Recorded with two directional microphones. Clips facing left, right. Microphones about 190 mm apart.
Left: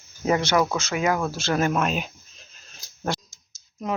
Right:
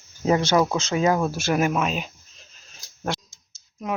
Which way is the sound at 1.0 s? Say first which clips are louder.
Right 3 dB; 25° right (ahead or behind).